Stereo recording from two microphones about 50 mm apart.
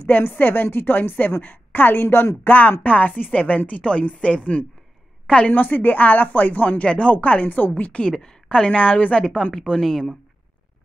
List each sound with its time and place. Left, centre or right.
0.0 s a woman's voice: left
2.4 s speech: left
5.2 s a sound: left
5.5 s speech: left
8.1 s speech: centre
9.4 s a woman's voice: centre